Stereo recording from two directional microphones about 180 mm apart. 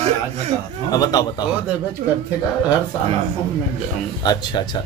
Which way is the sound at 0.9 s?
20° left (ahead or behind).